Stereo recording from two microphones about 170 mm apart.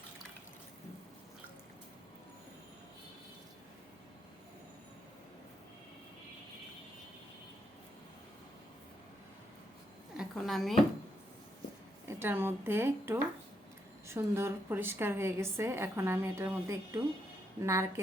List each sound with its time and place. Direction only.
10.2 s a woman's voice: centre (ahead or behind)
12.0 s a woman's voice: 15° right (ahead or behind)